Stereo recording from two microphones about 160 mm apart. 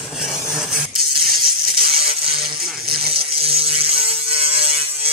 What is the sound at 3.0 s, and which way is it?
Ratchet, 35° right (ahead or behind).